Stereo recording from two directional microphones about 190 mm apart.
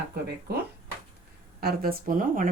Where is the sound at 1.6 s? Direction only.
50° right (ahead or behind).